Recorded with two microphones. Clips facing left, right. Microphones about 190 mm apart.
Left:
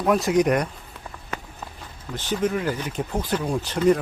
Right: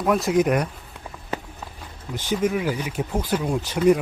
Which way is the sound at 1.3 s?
30° right (ahead or behind).